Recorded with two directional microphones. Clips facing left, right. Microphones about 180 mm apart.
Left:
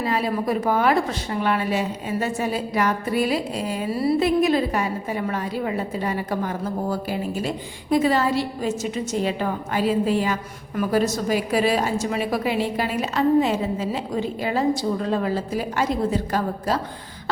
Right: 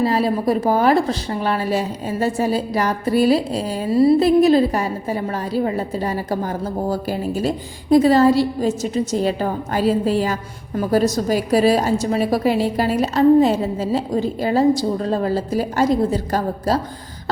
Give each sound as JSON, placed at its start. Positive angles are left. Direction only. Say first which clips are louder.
{"t": 0.0, "sound": "a woman's voice", "louder": "right 5 dB", "side_deg": -35}